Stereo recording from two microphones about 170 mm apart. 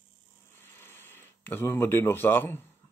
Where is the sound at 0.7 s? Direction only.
15° left (ahead or behind).